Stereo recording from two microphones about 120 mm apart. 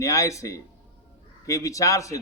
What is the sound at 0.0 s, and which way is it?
A man's voice, 25° left (ahead or behind).